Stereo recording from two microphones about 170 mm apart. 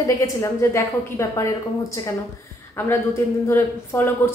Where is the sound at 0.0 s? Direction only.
20° left (ahead or behind).